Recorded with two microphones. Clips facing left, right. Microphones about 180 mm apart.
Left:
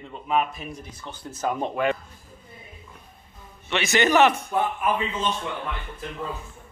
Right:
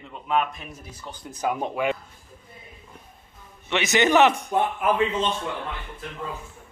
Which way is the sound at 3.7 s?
20° right (ahead or behind).